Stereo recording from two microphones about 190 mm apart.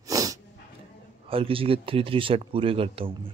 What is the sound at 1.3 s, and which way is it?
Speech, 30° right (ahead or behind).